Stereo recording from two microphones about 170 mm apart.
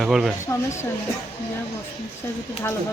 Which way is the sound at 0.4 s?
15° left (ahead or behind).